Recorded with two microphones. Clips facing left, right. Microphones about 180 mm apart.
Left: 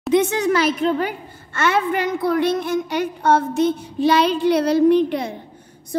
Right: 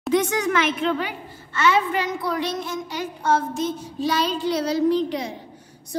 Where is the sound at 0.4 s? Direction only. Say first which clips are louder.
Left 4 dB; 35° left (ahead or behind).